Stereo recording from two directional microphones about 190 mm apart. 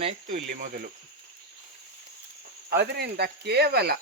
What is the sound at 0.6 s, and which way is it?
Speech, 50° right (ahead or behind).